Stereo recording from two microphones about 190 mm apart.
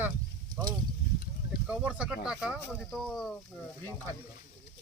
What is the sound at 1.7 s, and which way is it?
Speech, 5° right (ahead or behind).